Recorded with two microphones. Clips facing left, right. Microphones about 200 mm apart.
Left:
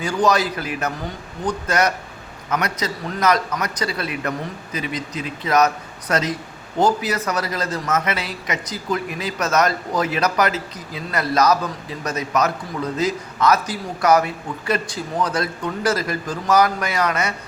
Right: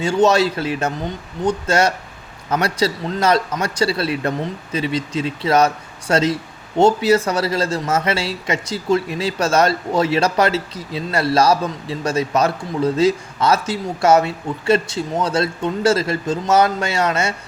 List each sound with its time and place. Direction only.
0.0 s a man's voice: 25° right (ahead or behind)